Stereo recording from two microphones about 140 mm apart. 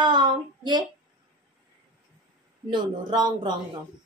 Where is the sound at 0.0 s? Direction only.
35° right (ahead or behind).